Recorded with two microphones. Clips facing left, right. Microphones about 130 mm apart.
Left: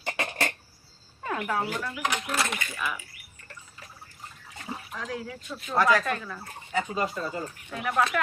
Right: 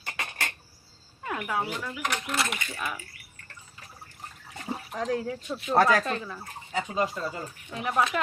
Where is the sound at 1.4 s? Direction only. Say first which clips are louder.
Left 1 dB; 10° right (ahead or behind).